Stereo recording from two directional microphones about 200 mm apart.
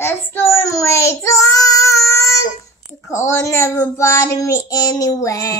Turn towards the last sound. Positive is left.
turn(degrees=15)  # may be behind; listen again after turning